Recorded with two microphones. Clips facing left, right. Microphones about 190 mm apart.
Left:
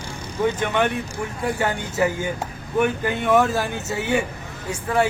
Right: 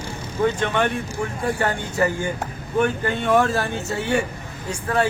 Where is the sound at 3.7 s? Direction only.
15° left (ahead or behind).